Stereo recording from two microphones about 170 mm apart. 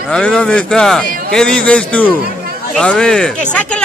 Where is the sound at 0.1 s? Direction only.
5° left (ahead or behind).